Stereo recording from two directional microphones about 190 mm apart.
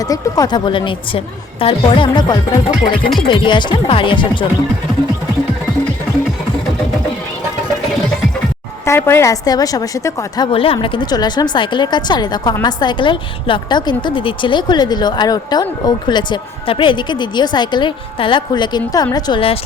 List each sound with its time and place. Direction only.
0.1 s a woman's voice: 20° left (ahead or behind)
2.8 s music: 50° left (ahead or behind)
3.2 s a woman's voice: 25° left (ahead or behind)
8.8 s a woman's voice: 10° left (ahead or behind)